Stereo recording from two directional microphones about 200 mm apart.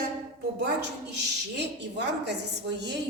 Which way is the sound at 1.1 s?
60° right (ahead or behind).